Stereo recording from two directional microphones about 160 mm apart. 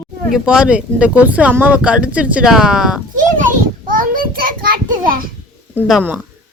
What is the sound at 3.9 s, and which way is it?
Child singing, 60° right (ahead or behind).